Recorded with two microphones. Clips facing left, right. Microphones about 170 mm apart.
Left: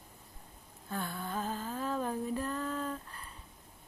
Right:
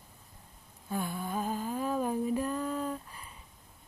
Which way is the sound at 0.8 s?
10° right (ahead or behind).